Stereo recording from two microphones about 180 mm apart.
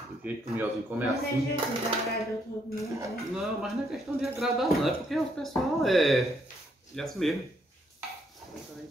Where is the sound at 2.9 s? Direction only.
15° right (ahead or behind).